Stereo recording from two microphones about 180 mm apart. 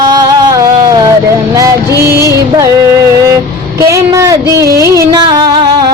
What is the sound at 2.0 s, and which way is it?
Music, 15° right (ahead or behind).